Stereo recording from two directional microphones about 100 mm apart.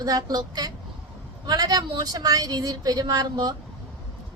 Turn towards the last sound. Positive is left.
turn(degrees=-45)  # may be behind; listen again after turning